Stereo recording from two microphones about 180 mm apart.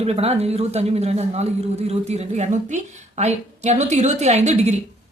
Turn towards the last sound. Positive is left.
turn(degrees=-40)  # may be behind; listen again after turning